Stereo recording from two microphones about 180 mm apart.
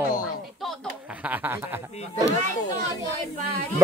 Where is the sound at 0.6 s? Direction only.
Centre (ahead or behind).